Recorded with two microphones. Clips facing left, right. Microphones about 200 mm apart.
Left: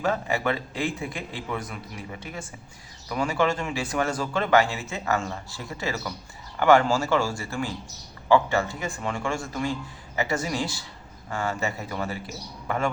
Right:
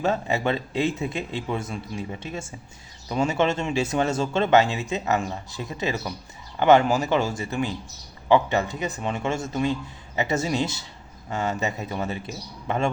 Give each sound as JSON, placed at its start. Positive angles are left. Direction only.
{"t": 0.0, "sound": "speech", "side_deg": -25}